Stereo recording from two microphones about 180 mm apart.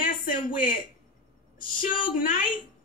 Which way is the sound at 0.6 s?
50° left (ahead or behind).